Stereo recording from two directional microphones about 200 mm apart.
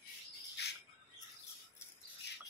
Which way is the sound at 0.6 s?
55° left (ahead or behind).